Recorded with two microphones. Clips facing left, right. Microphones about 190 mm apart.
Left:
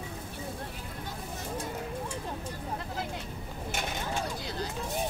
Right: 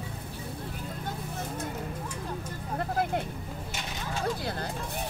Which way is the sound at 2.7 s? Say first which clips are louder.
Right 11 dB; 55° right (ahead or behind).